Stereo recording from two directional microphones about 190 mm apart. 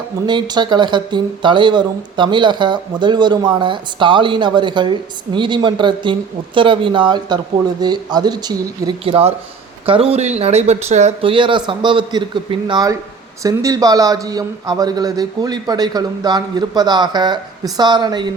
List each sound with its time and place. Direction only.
0.3 s speech: 25° right (ahead or behind)